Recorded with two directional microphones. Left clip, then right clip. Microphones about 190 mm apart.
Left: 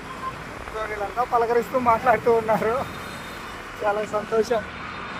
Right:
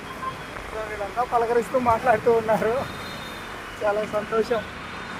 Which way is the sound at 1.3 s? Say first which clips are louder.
Even; 15° left (ahead or behind).